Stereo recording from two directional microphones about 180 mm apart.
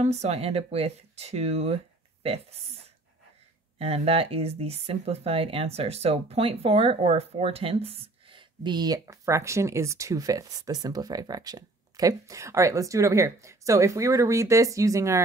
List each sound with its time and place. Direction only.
0.0 s speech: 40° right (ahead or behind)
3.7 s speech: 35° right (ahead or behind); by 15.2 s 15° right (ahead or behind)